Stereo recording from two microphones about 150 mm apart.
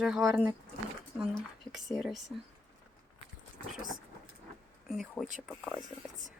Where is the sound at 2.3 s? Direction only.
5° right (ahead or behind).